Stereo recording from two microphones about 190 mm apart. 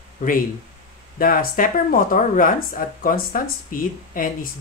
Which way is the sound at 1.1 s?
50° left (ahead or behind).